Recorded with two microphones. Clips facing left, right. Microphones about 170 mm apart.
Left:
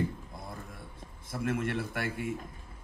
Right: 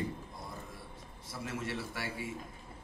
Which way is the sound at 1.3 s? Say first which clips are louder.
Left 7 dB; 55° left (ahead or behind).